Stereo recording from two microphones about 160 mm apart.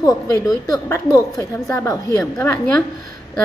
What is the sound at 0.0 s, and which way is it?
A woman's voice, 20° left (ahead or behind).